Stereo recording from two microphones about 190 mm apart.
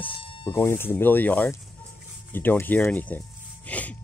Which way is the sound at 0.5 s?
10° left (ahead or behind).